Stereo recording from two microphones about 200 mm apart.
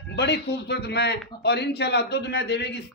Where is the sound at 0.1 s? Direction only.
55° left (ahead or behind).